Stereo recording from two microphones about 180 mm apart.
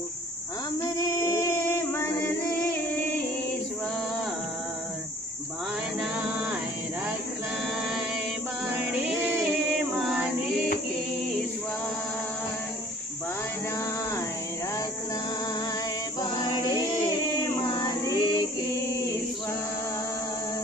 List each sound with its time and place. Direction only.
0.7 s female singing: 15° left (ahead or behind)
8.9 s music: 5° right (ahead or behind)
9.9 s female singing: centre (ahead or behind)
17.5 s female singing: 20° left (ahead or behind)